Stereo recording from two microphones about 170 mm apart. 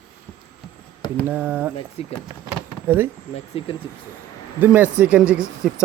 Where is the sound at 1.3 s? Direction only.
10° right (ahead or behind).